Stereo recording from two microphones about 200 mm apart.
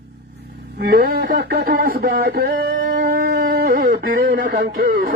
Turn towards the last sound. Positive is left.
turn(degrees=-45)  # may be behind; listen again after turning